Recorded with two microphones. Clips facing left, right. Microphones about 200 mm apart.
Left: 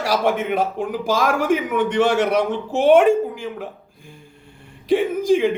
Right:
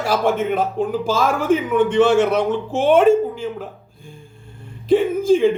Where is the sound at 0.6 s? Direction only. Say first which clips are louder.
Right 2 dB; 50° left (ahead or behind).